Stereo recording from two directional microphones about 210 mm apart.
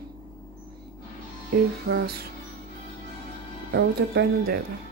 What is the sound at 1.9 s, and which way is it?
Speech, 50° right (ahead or behind).